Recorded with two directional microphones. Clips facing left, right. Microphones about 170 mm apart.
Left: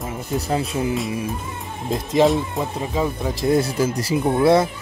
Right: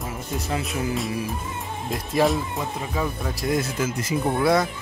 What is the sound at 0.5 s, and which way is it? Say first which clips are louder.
Speech: left 4 dB; 30° left (ahead or behind).